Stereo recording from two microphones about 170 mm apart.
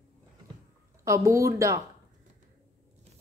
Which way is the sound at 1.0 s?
15° right (ahead or behind).